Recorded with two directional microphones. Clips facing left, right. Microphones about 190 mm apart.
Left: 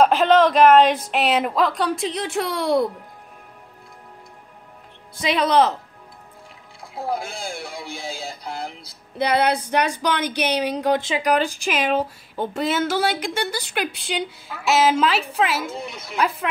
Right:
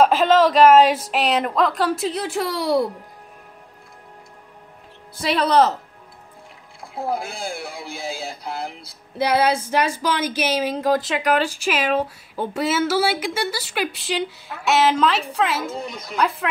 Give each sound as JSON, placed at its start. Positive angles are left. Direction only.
{"t": 0.0, "sound": "speech", "side_deg": 0}
{"t": 5.2, "sound": "speech", "side_deg": -5}
{"t": 7.0, "sound": "speech", "side_deg": 0}